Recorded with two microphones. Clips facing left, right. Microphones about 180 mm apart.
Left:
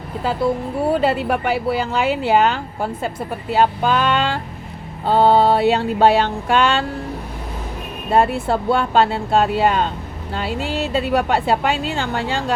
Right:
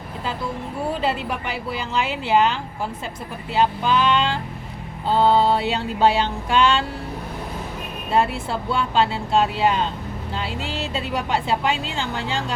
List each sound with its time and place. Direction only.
1.0 s a woman's voice: 55° left (ahead or behind)
8.1 s a woman's voice: 50° left (ahead or behind)